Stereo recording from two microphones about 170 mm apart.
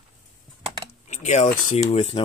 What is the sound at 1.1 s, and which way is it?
Speech, 45° left (ahead or behind).